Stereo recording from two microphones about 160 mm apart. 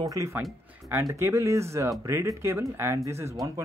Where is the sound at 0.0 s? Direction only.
20° right (ahead or behind).